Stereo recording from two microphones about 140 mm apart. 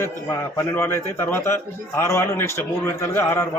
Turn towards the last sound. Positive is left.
turn(degrees=20)  # may be behind; listen again after turning